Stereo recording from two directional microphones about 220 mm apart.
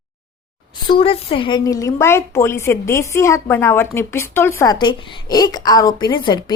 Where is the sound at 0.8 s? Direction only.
25° left (ahead or behind).